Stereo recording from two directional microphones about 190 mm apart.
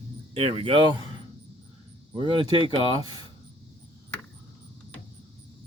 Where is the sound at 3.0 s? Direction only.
20° right (ahead or behind).